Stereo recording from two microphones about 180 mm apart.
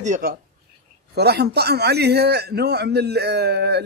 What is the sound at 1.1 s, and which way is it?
A man's voice, 65° right (ahead or behind).